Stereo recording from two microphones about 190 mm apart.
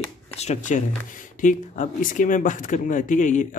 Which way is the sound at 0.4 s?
40° left (ahead or behind).